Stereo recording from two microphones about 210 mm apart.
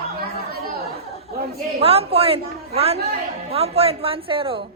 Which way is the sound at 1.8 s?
30° right (ahead or behind).